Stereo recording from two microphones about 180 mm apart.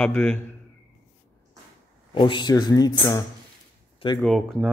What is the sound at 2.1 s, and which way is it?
Speech, 25° left (ahead or behind).